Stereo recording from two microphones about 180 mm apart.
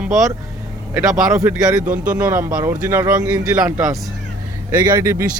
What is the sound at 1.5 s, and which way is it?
Speech, 10° right (ahead or behind).